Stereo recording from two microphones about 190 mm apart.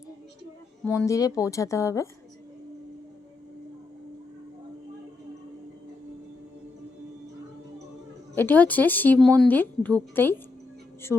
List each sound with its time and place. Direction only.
0.9 s speech: 15° left (ahead or behind)
8.4 s speech: 10° left (ahead or behind)